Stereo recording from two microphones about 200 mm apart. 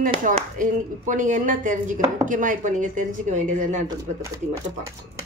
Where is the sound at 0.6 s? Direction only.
40° right (ahead or behind).